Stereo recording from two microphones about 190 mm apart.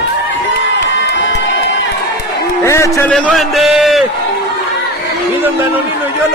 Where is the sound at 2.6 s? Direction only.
15° left (ahead or behind).